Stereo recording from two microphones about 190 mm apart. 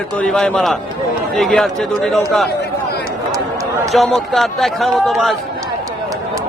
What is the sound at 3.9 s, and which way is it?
A man's voice, centre (ahead or behind).